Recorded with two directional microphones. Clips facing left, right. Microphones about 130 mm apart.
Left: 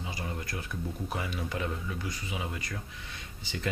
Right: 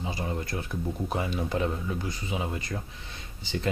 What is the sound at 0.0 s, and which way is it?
Speech, 30° right (ahead or behind).